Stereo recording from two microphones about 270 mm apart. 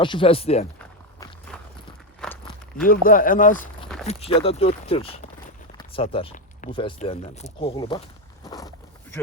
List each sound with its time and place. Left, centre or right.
0.0 s speech: centre
0.8 s walk: centre
2.8 s speech: left
5.7 s a sound: centre
6.8 s speech: left
8.4 s a sound: centre